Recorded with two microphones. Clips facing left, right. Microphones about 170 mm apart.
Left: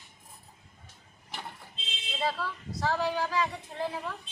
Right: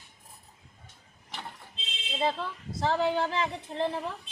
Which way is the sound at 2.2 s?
25° right (ahead or behind).